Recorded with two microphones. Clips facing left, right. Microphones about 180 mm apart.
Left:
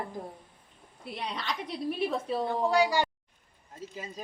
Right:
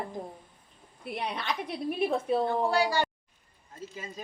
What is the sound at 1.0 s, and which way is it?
A woman's voice, 55° right (ahead or behind).